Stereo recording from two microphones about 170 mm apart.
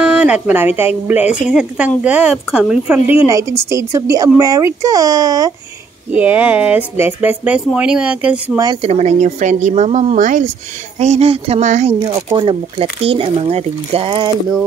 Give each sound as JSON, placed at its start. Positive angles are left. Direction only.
{"t": 0.0, "sound": "a woman's voice", "side_deg": -5}
{"t": 6.1, "sound": "speech", "side_deg": -10}
{"t": 8.8, "sound": "speech", "side_deg": -40}
{"t": 12.3, "sound": "speech", "side_deg": -25}